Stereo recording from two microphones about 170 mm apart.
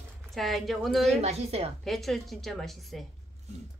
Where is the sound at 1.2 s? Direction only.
40° right (ahead or behind).